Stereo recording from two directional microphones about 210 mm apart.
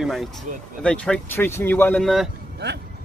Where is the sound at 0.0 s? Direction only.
Centre (ahead or behind).